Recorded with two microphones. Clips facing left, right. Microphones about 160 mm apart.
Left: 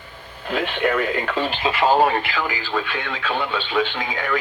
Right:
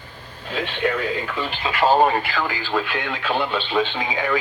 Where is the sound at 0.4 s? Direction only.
55° left (ahead or behind).